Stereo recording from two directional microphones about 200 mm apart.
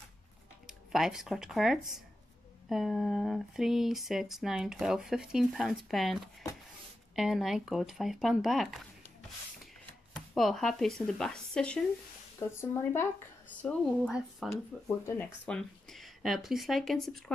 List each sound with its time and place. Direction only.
0.7 s speech: centre (ahead or behind)
10.1 s speech: centre (ahead or behind)